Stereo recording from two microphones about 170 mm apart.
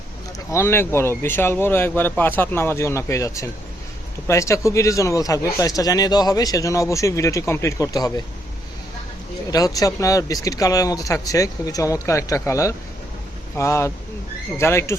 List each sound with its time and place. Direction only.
0.3 s speech: 15° left (ahead or behind)
9.5 s speech: 20° left (ahead or behind)